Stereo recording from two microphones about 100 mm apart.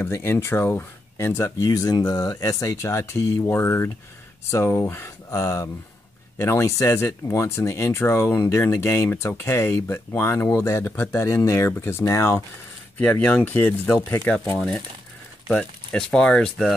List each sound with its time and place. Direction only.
0.0 s speech: 25° left (ahead or behind)
12.9 s speech: 15° left (ahead or behind)
15.5 s speech: 5° left (ahead or behind)